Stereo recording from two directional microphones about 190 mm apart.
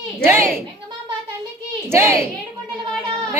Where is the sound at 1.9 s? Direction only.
15° right (ahead or behind).